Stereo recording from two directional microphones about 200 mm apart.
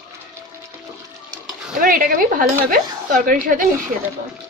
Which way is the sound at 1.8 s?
45° right (ahead or behind).